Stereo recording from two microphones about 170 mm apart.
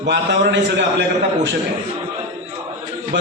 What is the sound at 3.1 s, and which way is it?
Speech, 80° right.